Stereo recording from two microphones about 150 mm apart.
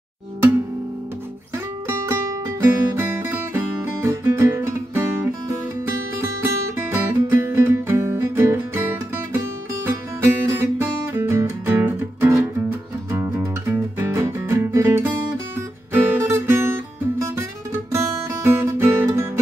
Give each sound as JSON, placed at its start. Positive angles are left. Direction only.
{"t": 1.9, "sound": "music", "side_deg": -20}
{"t": 17.9, "sound": "guitar", "side_deg": -15}